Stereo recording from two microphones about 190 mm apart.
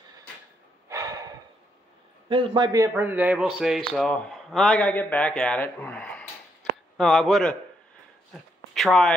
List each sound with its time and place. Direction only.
0.8 s snort: 15° right (ahead or behind)
2.2 s a man's voice: 25° right (ahead or behind); by 7.5 s centre (ahead or behind)
8.3 s a sound: centre (ahead or behind)